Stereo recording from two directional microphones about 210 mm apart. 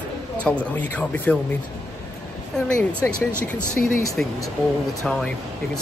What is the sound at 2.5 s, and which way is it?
A man's voice, 5° left (ahead or behind).